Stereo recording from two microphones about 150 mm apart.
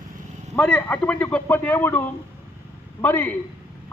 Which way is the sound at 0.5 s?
5° left (ahead or behind).